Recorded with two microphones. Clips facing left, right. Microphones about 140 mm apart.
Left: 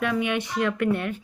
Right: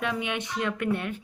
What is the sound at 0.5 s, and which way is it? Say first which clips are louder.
Speech: left 4 dB; 50° left (ahead or behind).